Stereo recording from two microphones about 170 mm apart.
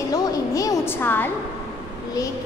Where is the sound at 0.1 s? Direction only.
20° left (ahead or behind).